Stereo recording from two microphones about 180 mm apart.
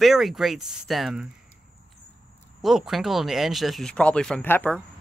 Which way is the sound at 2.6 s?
Centre (ahead or behind).